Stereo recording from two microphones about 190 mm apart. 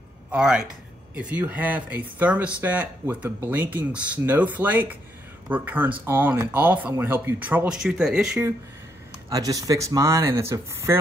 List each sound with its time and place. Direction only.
0.3 s a man's voice: 5° right (ahead or behind)
9.3 s speech: 20° right (ahead or behind)